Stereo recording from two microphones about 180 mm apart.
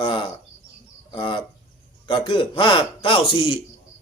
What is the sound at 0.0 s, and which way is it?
Bird, 25° left (ahead or behind).